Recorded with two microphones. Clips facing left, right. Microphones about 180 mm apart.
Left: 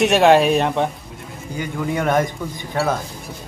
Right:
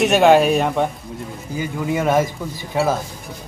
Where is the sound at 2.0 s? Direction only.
5° right (ahead or behind).